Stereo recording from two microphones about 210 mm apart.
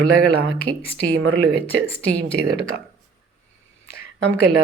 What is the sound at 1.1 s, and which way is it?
Speech, 65° right (ahead or behind).